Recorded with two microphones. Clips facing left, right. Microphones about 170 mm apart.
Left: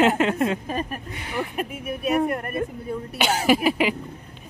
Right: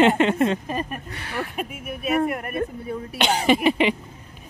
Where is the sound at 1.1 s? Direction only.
20° left (ahead or behind).